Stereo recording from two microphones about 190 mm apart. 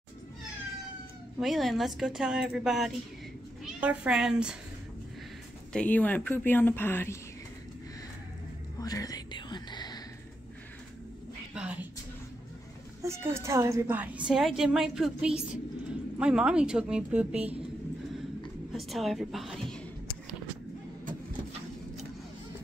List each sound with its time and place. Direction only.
1.4 s a woman's voice: centre (ahead or behind)
5.7 s speech: 5° left (ahead or behind)
8.7 s whispering: 20° left (ahead or behind)
11.5 s a sound: 5° right (ahead or behind)
13.0 s a woman's voice: 15° right (ahead or behind)
18.7 s a woman's voice: centre (ahead or behind)